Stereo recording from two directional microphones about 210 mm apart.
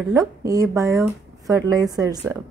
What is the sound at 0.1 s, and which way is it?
A woman's voice, 15° right (ahead or behind).